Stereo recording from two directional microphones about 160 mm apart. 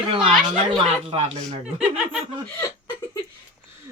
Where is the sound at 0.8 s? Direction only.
35° right (ahead or behind).